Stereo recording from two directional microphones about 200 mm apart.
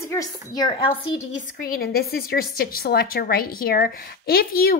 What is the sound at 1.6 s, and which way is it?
A woman's voice, 50° left (ahead or behind).